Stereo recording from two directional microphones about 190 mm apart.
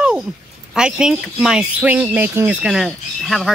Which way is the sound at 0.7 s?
5° right (ahead or behind).